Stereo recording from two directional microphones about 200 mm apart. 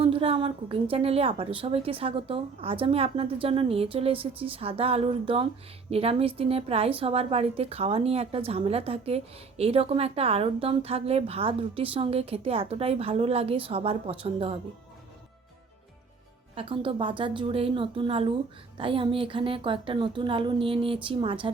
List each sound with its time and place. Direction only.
0.0 s a woman's voice: 25° right (ahead or behind)
16.6 s a woman's voice: 25° right (ahead or behind)